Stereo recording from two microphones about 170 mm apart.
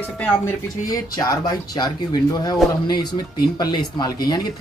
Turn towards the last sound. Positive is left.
turn(degrees=25)  # may be behind; listen again after turning